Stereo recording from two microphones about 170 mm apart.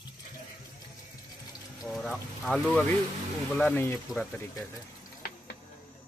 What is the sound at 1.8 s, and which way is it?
Speech, centre (ahead or behind).